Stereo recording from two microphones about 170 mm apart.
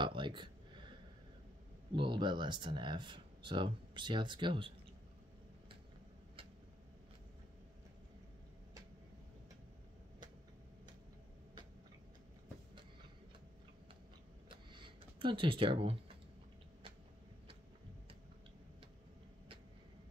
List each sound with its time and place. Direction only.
0.0 s speech: 30° right (ahead or behind)
2.0 s speech: 30° right (ahead or behind)
14.5 s tick-tock: 30° right (ahead or behind)